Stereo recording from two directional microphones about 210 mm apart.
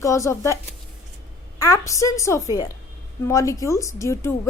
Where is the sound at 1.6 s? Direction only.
15° left (ahead or behind).